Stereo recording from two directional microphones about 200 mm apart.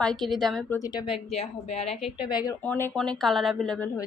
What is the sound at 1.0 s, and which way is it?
Speech, 30° left (ahead or behind).